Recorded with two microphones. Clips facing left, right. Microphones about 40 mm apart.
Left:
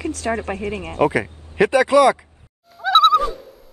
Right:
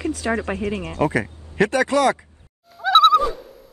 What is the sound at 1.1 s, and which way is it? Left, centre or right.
Speech, centre.